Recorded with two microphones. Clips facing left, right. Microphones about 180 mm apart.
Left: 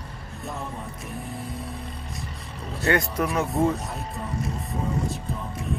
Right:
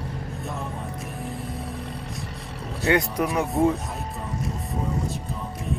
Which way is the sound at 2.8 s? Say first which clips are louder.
Right 1 dB; 15° right (ahead or behind).